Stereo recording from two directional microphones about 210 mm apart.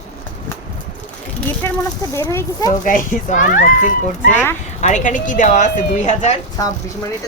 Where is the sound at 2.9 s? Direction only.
40° left (ahead or behind).